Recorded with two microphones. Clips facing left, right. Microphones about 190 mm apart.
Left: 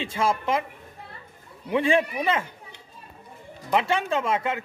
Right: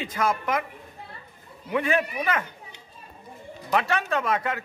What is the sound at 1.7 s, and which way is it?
Speech, 25° left (ahead or behind).